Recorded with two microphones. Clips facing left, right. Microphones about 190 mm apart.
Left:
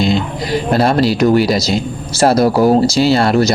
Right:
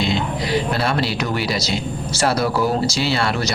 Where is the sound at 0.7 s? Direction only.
40° left (ahead or behind).